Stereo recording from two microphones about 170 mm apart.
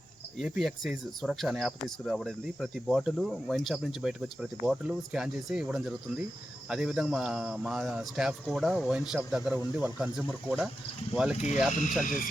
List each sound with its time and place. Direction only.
0.3 s speech: centre (ahead or behind)